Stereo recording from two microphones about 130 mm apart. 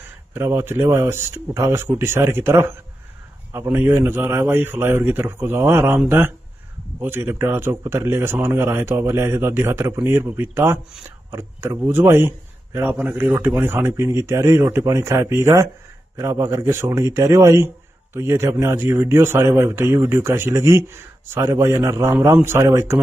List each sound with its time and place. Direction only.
0.3 s a man's voice: 20° right (ahead or behind)